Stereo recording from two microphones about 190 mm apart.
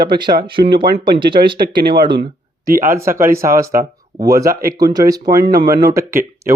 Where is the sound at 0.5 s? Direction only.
60° right (ahead or behind).